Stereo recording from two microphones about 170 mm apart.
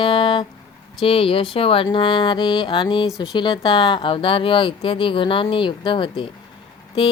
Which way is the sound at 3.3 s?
25° left (ahead or behind).